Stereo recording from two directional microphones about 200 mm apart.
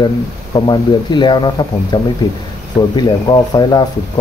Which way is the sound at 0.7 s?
20° left (ahead or behind).